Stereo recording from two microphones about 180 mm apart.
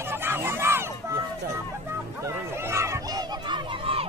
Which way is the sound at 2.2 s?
15° right (ahead or behind).